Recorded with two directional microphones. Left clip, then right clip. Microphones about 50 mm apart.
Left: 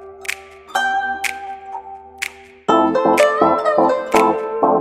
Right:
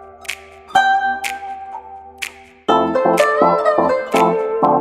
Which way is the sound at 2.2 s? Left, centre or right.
Centre.